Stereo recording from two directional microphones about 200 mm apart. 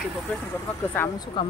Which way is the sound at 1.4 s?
25° left (ahead or behind).